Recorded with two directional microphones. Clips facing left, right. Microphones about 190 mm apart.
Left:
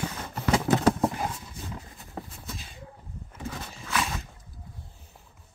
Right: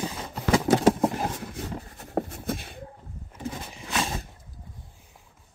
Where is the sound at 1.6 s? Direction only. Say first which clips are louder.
Right 5 dB; 50° right (ahead or behind).